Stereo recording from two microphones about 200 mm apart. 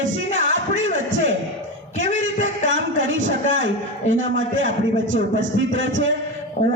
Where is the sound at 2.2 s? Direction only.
70° right (ahead or behind).